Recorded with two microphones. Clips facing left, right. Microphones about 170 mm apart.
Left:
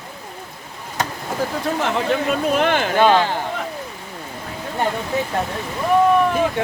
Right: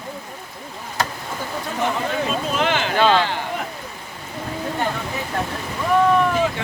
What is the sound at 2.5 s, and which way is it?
Speech, 50° left (ahead or behind).